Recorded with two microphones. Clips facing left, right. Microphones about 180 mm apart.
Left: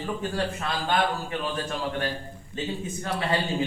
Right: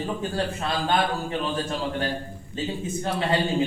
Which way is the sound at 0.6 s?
35° right (ahead or behind).